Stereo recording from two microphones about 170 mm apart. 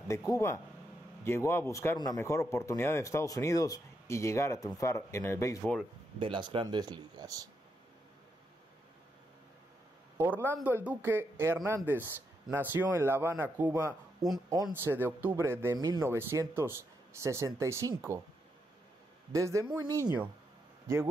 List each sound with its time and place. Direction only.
0.1 s speech: 20° left (ahead or behind)
5.6 s speech: centre (ahead or behind)
6.1 s speech: 30° right (ahead or behind)
10.1 s speech: 10° right (ahead or behind)
19.3 s a man's voice: 15° right (ahead or behind)